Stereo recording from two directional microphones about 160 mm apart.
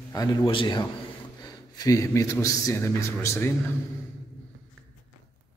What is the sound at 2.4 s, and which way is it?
A man's voice, 20° left (ahead or behind).